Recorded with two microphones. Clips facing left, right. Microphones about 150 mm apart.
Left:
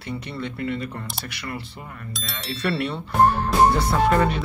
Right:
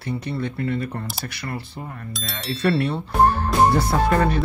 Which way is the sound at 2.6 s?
35° right (ahead or behind).